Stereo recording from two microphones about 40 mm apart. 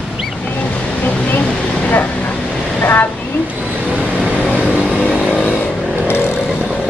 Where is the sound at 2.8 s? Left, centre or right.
Left.